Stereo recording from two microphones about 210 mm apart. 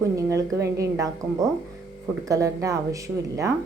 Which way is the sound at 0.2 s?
15° right (ahead or behind).